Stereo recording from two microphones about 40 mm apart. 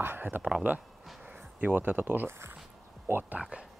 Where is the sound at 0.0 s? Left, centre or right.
Right.